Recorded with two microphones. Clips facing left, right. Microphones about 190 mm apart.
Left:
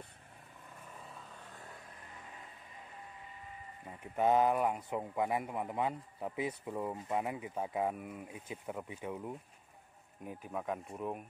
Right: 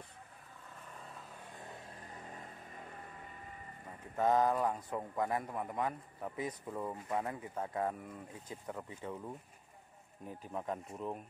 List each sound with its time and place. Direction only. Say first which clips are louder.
2.2 s vehicle: right 4 dB; 45° right (ahead or behind)
4.0 s a man's voice: left 2 dB; 15° left (ahead or behind)
10.6 s speech: left 1 dB; centre (ahead or behind)
11.0 s a man's voice: left 1 dB; 10° left (ahead or behind)